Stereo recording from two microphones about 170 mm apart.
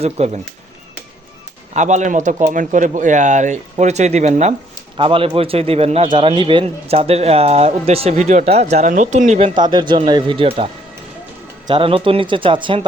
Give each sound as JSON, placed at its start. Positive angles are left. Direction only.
{"t": 0.2, "sound": "a man's voice", "side_deg": -40}
{"t": 1.7, "sound": "a man's voice", "side_deg": -45}
{"t": 9.6, "sound": "speech", "side_deg": -25}
{"t": 11.7, "sound": "a man's voice", "side_deg": -30}